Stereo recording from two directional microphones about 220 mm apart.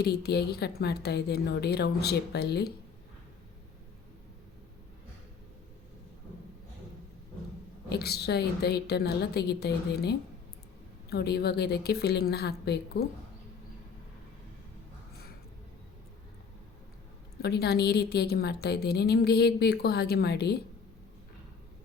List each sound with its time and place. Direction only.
0.0 s a woman's voice: 45° left (ahead or behind)
7.9 s a woman's voice: 45° left (ahead or behind)
17.4 s a woman's voice: 50° left (ahead or behind)